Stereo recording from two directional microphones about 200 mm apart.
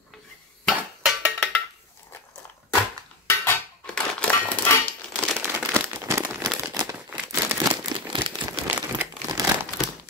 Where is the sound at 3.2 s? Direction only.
5° left (ahead or behind).